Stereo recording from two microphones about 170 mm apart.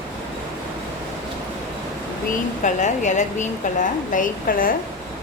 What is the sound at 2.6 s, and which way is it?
A woman's voice, 45° left (ahead or behind).